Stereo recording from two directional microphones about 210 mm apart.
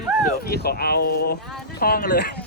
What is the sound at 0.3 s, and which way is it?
Speech, 50° left (ahead or behind).